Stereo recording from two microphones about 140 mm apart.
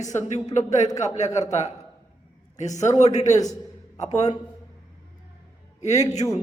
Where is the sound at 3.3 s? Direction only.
25° left (ahead or behind).